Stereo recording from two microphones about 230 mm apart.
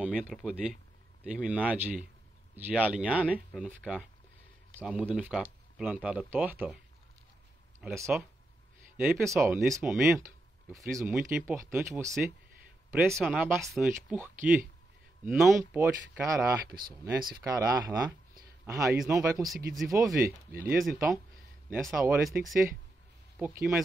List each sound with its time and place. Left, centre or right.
0.0 s speech: centre
7.8 s speech: centre
16.8 s speech: centre
20.6 s speech: centre
23.4 s speech: centre